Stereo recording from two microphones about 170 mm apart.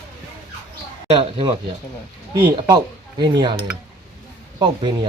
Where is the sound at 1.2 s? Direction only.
30° right (ahead or behind).